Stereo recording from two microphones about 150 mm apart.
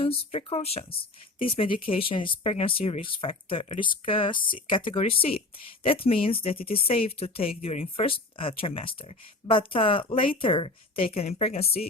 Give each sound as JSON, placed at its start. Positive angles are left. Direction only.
{"t": 0.0, "sound": "speech", "side_deg": 40}